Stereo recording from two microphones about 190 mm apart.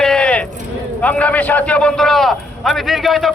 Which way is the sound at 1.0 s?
5° left (ahead or behind).